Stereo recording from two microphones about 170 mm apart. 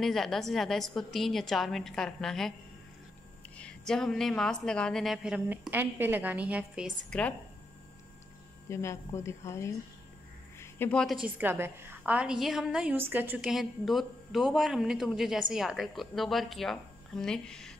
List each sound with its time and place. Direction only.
0.0 s a woman's voice: centre (ahead or behind)
3.5 s a woman's voice: 5° left (ahead or behind)
7.1 s speech: 10° left (ahead or behind)
8.6 s speech: 15° left (ahead or behind)
10.6 s a sound: 10° left (ahead or behind)
11.2 s a woman's voice: 10° right (ahead or behind)